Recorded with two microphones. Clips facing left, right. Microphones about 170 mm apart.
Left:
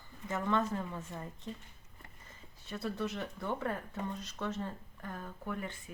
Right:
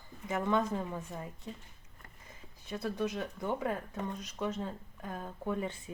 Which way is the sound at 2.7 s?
15° right (ahead or behind).